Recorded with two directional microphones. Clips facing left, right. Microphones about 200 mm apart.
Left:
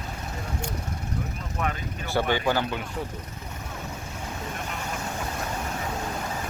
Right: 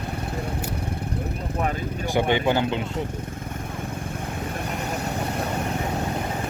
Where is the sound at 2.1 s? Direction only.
20° right (ahead or behind).